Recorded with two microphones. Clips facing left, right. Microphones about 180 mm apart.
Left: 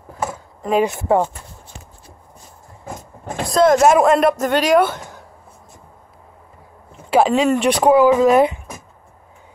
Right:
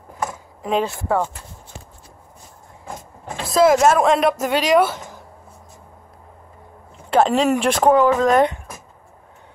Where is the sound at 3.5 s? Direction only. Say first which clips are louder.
Left 1 dB; 5° right (ahead or behind).